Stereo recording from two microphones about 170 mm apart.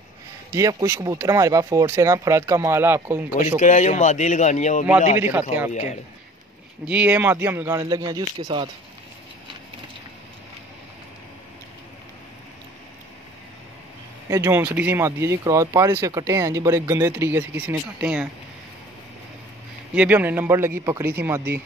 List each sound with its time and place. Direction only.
0.5 s speech: 20° right (ahead or behind)
3.5 s speech: 45° left (ahead or behind)
6.9 s speech: 10° right (ahead or behind); by 8.6 s 25° right (ahead or behind)
14.3 s speech: 15° right (ahead or behind)
20.0 s speech: 10° right (ahead or behind)